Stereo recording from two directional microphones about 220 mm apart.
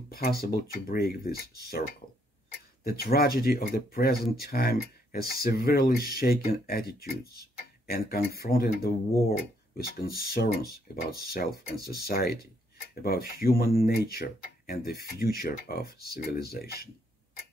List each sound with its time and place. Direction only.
0.1 s speech: 45° left (ahead or behind)